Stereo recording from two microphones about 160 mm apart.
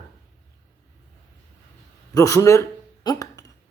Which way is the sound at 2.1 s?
20° left (ahead or behind).